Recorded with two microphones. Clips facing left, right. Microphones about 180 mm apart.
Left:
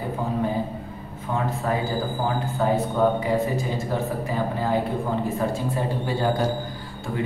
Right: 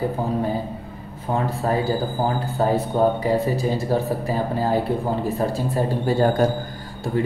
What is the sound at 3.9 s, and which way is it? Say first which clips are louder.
A man's voice: right 4 dB; 35° right (ahead or behind).